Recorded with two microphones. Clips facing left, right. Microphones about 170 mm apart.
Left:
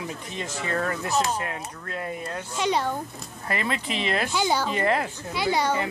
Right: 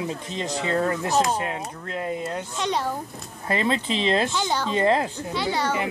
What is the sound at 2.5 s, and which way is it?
Speech, 5° left (ahead or behind).